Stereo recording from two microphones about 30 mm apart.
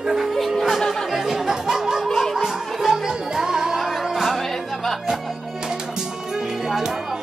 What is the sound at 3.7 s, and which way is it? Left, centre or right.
Music, centre.